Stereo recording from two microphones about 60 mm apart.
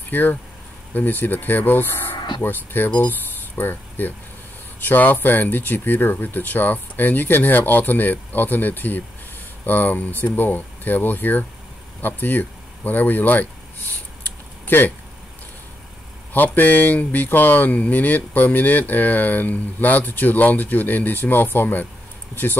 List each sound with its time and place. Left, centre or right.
0.1 s speech: left
14.2 s a sound: left
16.3 s speech: left